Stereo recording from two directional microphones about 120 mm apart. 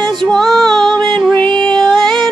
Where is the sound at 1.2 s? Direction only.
10° left (ahead or behind).